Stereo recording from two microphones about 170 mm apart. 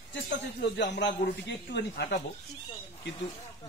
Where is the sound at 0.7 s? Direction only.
90° left.